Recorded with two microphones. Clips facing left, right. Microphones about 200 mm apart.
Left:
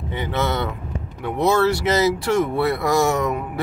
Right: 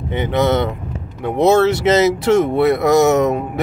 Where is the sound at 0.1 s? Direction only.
20° right (ahead or behind).